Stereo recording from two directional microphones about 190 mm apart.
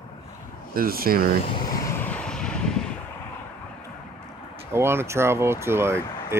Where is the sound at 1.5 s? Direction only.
20° left (ahead or behind).